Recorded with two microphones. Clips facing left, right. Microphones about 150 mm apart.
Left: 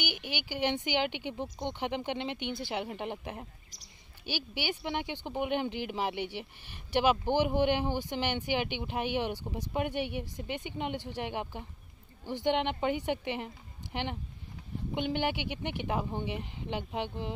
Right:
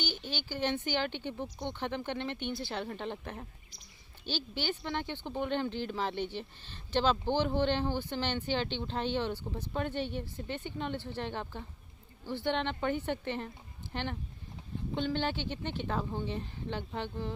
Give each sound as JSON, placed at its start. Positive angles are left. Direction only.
{"t": 0.0, "sound": "speech", "side_deg": 15}